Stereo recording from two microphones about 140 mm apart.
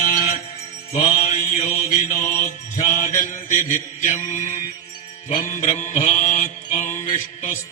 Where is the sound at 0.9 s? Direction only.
40° left (ahead or behind).